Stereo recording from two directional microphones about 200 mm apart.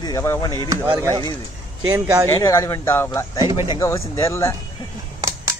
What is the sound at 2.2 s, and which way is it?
Speech, 15° left (ahead or behind).